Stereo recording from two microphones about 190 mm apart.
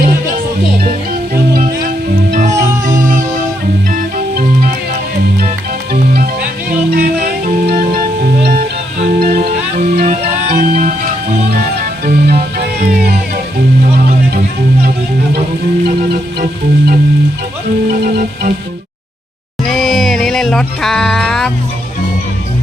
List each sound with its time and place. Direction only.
2.8 s music: 45° right (ahead or behind)
6.9 s music: 55° right (ahead or behind)
17.9 s music: 45° right (ahead or behind)
19.6 s music: centre (ahead or behind)